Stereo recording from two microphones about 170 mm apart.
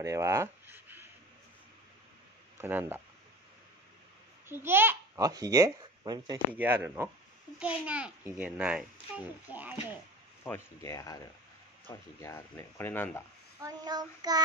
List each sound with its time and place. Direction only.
0.0 s a sound: 15° right (ahead or behind)
2.6 s a child's voice: 10° right (ahead or behind)
4.5 s a child's voice: 15° right (ahead or behind)
6.5 s a child's voice: 10° right (ahead or behind)
10.4 s speech: 15° left (ahead or behind)
13.6 s child singing: 20° right (ahead or behind)